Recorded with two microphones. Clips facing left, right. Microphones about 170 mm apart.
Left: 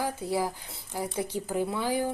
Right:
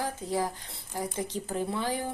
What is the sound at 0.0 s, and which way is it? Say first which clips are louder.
A woman's voice: left 1 dB; 10° left (ahead or behind).